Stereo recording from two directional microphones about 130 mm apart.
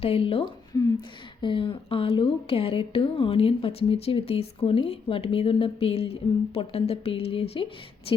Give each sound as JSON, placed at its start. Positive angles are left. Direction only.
{"t": 0.0, "sound": "speech", "side_deg": 45}